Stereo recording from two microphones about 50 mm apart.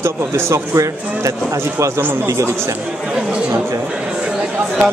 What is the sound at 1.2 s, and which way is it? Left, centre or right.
Speech, right.